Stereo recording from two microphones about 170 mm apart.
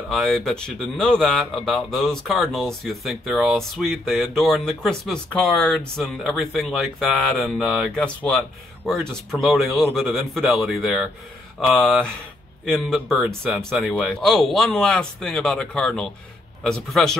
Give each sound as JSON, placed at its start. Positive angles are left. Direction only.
{"t": 0.1, "sound": "speech", "side_deg": 0}